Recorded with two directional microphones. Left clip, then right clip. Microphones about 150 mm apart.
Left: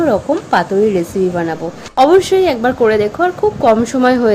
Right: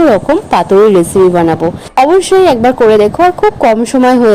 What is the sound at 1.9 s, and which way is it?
A woman's voice, 30° right (ahead or behind).